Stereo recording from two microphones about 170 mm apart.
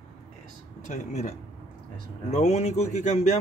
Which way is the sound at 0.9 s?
45° left (ahead or behind).